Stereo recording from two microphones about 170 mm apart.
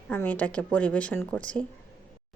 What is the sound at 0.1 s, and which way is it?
A woman's voice, 10° left (ahead or behind).